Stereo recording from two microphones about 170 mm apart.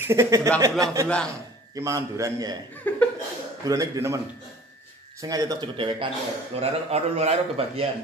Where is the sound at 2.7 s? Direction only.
10° left (ahead or behind).